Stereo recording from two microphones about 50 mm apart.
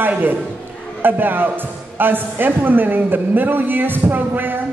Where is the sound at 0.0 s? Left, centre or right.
Right.